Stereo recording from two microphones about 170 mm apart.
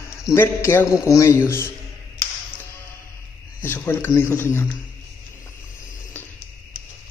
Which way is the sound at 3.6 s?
10° left (ahead or behind).